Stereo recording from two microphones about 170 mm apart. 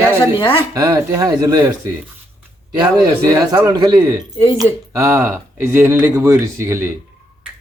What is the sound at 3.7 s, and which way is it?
Speech, 25° right (ahead or behind).